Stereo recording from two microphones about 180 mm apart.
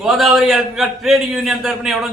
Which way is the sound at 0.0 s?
Centre (ahead or behind).